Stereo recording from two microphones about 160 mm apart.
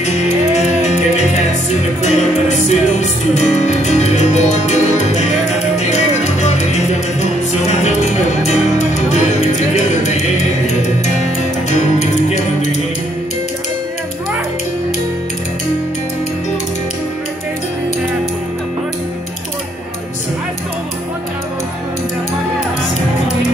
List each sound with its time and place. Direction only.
0.0 s music: 45° left (ahead or behind)
2.0 s music: 45° left (ahead or behind)
11.7 s music: 45° left (ahead or behind)